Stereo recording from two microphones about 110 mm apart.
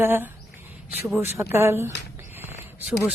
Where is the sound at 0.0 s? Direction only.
20° right (ahead or behind).